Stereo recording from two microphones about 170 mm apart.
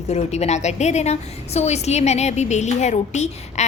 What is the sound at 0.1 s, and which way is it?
A woman's voice, 40° left (ahead or behind).